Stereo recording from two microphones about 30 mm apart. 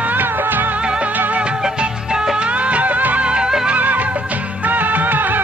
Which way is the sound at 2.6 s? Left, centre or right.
Right.